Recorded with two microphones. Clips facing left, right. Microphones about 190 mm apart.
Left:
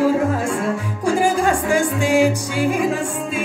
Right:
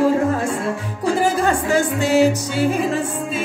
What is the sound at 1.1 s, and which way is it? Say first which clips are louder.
Music: left 1 dB; 10° left (ahead or behind).